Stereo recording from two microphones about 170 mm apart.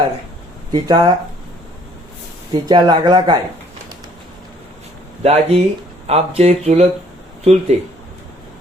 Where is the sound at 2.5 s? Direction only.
25° right (ahead or behind).